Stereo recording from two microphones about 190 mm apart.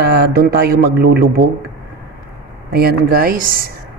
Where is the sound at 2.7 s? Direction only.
55° right (ahead or behind).